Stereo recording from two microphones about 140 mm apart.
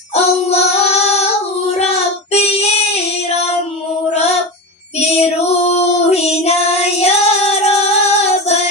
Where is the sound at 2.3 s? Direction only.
45° left (ahead or behind).